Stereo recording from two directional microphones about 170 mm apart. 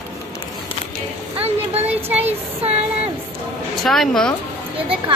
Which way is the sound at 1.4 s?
35° right (ahead or behind).